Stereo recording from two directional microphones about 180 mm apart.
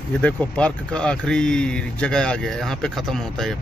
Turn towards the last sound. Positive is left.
turn(degrees=5)  # may be behind; listen again after turning